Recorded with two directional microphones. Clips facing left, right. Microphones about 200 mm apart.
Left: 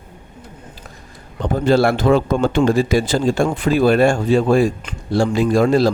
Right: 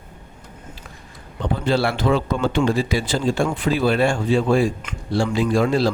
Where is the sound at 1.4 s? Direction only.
45° left (ahead or behind).